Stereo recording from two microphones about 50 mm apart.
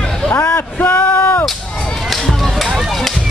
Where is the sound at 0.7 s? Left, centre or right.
Left.